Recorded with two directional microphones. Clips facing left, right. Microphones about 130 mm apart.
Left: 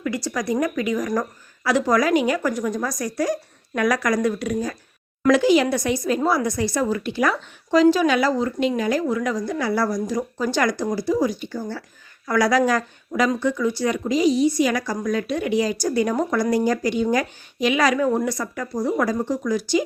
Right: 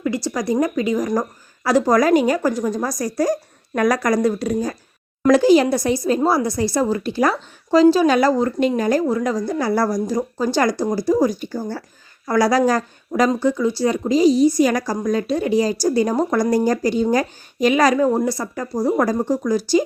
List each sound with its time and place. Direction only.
0.0 s speech: 30° right (ahead or behind)